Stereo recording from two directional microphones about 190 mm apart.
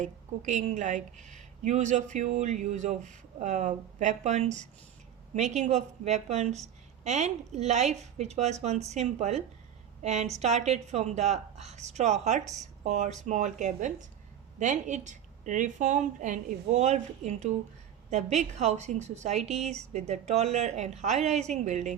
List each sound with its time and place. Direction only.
0.0 s a woman's voice: 35° right (ahead or behind)